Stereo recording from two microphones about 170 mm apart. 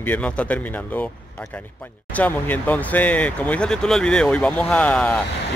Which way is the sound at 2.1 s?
10° left (ahead or behind).